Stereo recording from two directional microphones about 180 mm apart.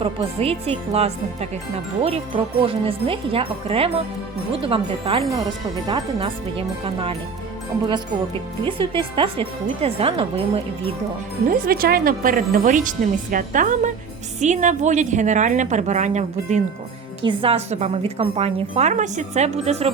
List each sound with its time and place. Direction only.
0.0 s speech: 35° right (ahead or behind)
8.6 s speech: 30° right (ahead or behind)
11.4 s a woman's voice: 50° right (ahead or behind); by 19.9 s 35° right (ahead or behind)